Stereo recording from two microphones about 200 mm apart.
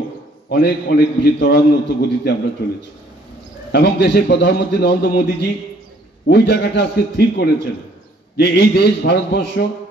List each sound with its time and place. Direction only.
0.5 s a man's voice: 55° left (ahead or behind)
3.7 s a man's voice: 55° left (ahead or behind)
6.2 s a man's voice: 55° left (ahead or behind)